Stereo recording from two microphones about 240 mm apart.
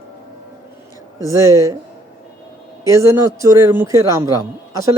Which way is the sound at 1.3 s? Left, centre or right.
Centre.